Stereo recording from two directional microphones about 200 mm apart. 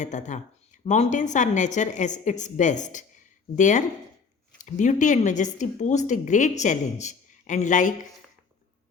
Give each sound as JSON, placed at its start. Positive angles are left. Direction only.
{"t": 0.0, "sound": "speech", "side_deg": 40}